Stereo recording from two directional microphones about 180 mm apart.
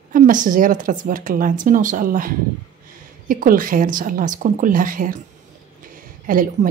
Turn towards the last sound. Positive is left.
turn(degrees=-40)  # may be behind; listen again after turning